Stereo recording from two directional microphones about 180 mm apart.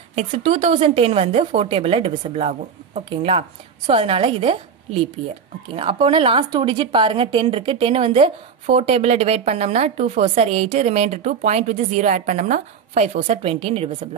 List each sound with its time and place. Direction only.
0.1 s speech: 35° right (ahead or behind)